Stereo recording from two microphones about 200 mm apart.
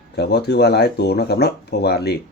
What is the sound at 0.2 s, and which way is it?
Speech, 55° left (ahead or behind).